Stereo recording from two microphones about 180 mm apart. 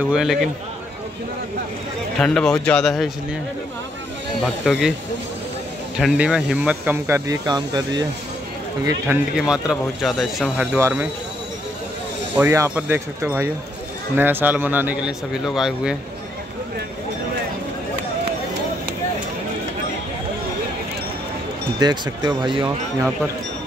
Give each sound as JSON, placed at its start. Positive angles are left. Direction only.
{"t": 0.1, "sound": "speech", "side_deg": 0}
{"t": 2.1, "sound": "speech", "side_deg": 5}
{"t": 4.6, "sound": "speech", "side_deg": 0}
{"t": 5.9, "sound": "speech", "side_deg": -5}
{"t": 9.4, "sound": "speech", "side_deg": -5}
{"t": 10.8, "sound": "speech", "side_deg": -10}
{"t": 12.4, "sound": "speech", "side_deg": -15}
{"t": 21.7, "sound": "speech", "side_deg": -25}